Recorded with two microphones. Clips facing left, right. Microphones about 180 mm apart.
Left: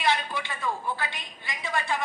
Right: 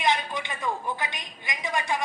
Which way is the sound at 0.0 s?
15° right (ahead or behind).